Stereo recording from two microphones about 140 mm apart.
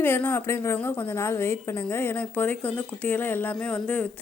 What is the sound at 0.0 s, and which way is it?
A woman's voice, 15° left (ahead or behind).